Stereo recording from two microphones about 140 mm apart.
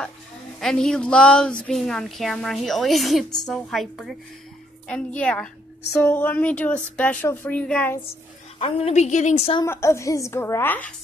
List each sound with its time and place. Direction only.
0.6 s a woman's voice: 5° left (ahead or behind)
8.5 s a woman's voice: 45° left (ahead or behind)
9.7 s a woman's voice: 20° left (ahead or behind)